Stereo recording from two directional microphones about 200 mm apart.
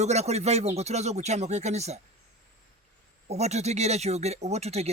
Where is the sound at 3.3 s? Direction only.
35° right (ahead or behind).